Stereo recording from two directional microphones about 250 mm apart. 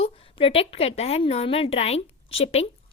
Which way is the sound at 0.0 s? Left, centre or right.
Left.